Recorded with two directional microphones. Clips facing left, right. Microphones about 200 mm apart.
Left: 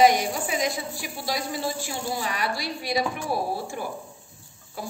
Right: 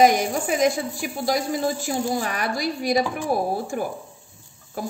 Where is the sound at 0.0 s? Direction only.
45° right (ahead or behind).